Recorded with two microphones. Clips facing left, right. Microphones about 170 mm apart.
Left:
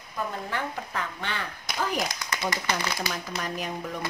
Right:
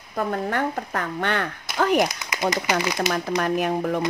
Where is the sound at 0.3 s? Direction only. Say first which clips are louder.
Right 8 dB; 50° right (ahead or behind).